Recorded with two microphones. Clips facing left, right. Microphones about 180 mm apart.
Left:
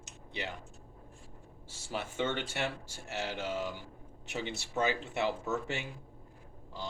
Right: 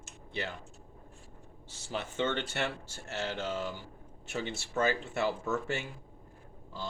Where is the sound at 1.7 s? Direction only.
10° left (ahead or behind).